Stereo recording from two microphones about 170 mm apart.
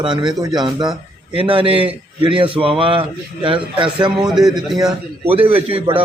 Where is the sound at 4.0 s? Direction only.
5° right (ahead or behind).